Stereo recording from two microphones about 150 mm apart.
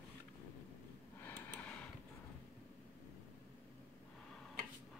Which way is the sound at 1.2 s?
10° left (ahead or behind).